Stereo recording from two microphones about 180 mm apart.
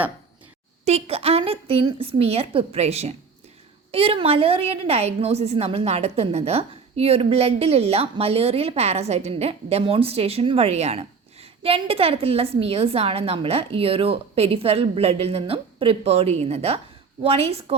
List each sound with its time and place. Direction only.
0.9 s a woman's voice: 35° right (ahead or behind)